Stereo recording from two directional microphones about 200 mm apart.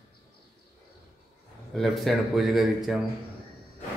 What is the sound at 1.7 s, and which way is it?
A man's voice, centre (ahead or behind).